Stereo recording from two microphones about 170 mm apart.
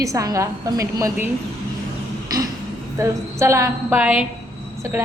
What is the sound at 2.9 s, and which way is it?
A woman's voice, 20° right (ahead or behind).